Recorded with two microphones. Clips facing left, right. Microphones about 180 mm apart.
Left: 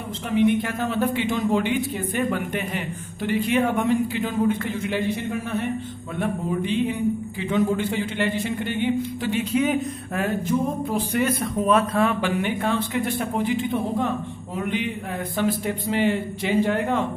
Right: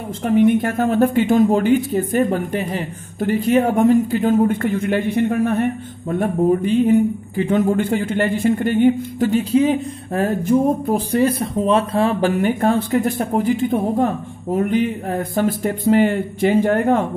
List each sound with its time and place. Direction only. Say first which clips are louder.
0.2 s speech: right 6 dB; 45° right (ahead or behind)
11.1 s speech: right 5 dB; 30° right (ahead or behind); by 17.0 s 50° right (ahead or behind)